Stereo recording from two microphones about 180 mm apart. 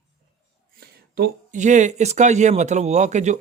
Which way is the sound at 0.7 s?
60° right (ahead or behind).